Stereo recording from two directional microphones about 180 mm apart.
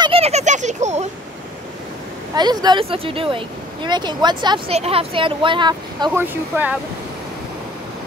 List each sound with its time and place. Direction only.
0.0 s a sound: 35° right (ahead or behind)
2.3 s speech: 25° right (ahead or behind)
6.1 s speech: 10° right (ahead or behind)